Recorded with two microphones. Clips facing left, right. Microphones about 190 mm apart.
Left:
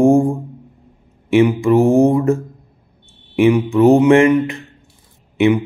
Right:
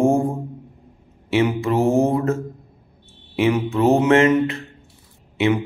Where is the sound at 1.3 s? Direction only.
15° left (ahead or behind).